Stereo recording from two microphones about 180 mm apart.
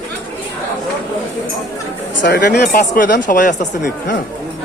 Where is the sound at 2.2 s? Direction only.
65° left (ahead or behind); by 3.6 s 45° left (ahead or behind).